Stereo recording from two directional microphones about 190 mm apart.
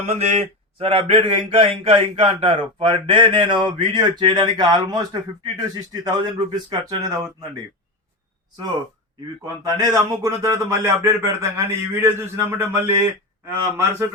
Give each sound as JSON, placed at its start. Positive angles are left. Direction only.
{"t": 0.0, "sound": "speech", "side_deg": -35}
{"t": 9.6, "sound": "speech", "side_deg": -15}